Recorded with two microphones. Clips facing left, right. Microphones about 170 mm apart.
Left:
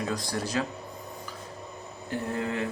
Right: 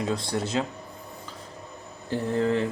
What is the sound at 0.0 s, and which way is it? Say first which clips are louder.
Speech: right 3 dB; 25° right (ahead or behind).